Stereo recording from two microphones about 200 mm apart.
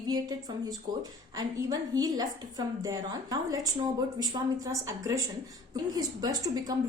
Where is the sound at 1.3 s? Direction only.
20° right (ahead or behind).